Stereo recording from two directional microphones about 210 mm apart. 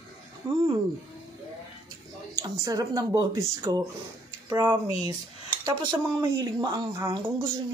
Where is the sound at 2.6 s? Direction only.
15° right (ahead or behind).